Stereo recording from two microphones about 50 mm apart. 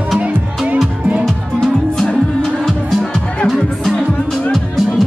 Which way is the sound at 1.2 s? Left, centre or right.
Centre.